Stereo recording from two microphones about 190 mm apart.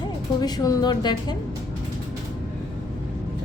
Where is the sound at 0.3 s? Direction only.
20° left (ahead or behind).